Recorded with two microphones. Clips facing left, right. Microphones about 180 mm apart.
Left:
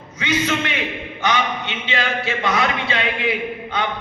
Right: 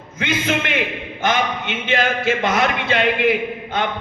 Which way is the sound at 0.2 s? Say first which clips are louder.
Even; 50° right (ahead or behind).